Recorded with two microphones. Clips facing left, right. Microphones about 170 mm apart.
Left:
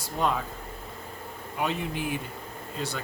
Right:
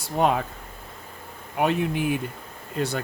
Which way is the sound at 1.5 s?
60° right (ahead or behind).